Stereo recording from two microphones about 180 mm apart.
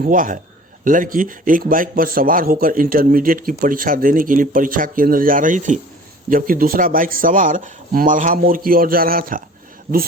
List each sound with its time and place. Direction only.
0.0 s speech: 50° right (ahead or behind)